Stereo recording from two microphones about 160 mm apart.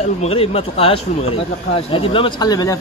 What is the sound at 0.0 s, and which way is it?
A woman's voice, 40° left (ahead or behind).